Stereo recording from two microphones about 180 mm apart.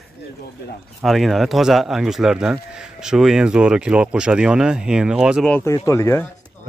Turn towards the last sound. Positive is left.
turn(degrees=15)  # may be behind; listen again after turning